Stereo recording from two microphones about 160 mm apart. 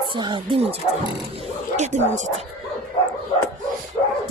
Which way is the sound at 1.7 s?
45° right (ahead or behind).